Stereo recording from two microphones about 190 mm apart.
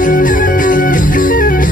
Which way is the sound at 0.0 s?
45° left (ahead or behind).